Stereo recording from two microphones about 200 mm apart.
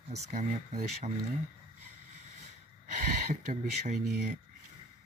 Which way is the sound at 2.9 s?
40° right (ahead or behind).